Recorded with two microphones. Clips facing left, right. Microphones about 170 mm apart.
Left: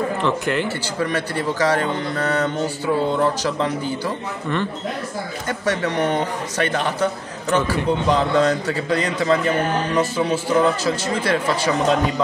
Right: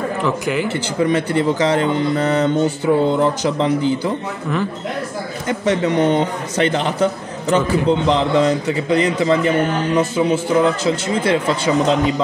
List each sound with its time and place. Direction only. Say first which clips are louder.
0.2 s speech: right 1 dB; 5° right (ahead or behind)
0.7 s speech: right 6 dB; 20° right (ahead or behind)
5.5 s speech: right 5 dB; 20° right (ahead or behind)